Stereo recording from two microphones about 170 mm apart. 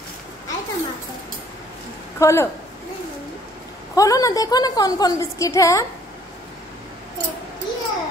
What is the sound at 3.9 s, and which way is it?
A woman's voice, 20° left (ahead or behind).